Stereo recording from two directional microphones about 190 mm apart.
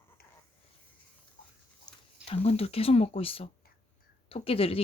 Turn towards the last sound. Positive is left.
turn(degrees=30)  # may be behind; listen again after turning